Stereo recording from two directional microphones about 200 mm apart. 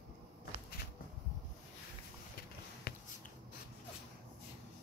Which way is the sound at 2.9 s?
55° left (ahead or behind).